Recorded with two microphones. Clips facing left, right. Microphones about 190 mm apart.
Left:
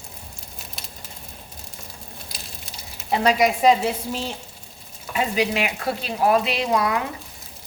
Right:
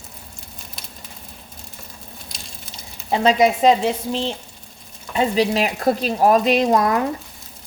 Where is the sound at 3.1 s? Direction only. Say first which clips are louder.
Right 3 dB; 25° right (ahead or behind); by 7.0 s 45° right (ahead or behind).